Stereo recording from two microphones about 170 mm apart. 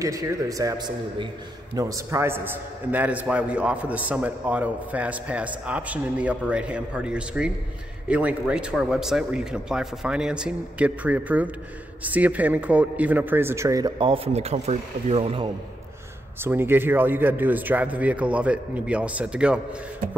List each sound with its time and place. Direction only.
0.0 s a man's voice: 20° right (ahead or behind)
16.3 s a man's voice: 15° right (ahead or behind)